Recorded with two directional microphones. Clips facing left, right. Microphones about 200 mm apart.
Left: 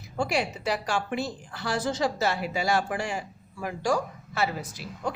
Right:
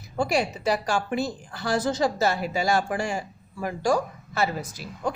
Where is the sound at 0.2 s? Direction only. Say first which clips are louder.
Right 3 dB; 40° right (ahead or behind).